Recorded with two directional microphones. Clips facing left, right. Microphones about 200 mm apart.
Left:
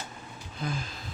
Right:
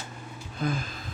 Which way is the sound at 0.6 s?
55° right (ahead or behind).